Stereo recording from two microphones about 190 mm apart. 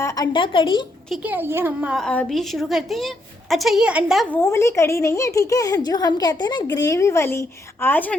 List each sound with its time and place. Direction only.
0.0 s a woman's voice: 20° left (ahead or behind)
1.1 s a woman's voice: 10° right (ahead or behind)
4.3 s a woman's voice: 10° left (ahead or behind)